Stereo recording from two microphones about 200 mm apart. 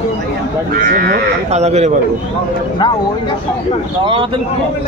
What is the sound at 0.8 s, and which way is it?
Speech, 50° right (ahead or behind).